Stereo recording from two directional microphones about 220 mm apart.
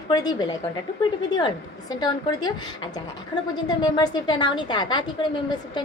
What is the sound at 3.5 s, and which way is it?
A woman's voice, 20° left (ahead or behind).